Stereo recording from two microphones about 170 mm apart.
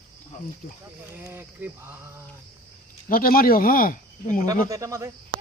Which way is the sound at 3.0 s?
60° left (ahead or behind).